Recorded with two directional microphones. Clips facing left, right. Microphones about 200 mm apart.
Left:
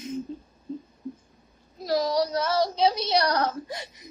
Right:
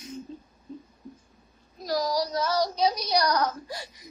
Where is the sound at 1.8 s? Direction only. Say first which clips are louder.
Left 3 dB; 25° left (ahead or behind).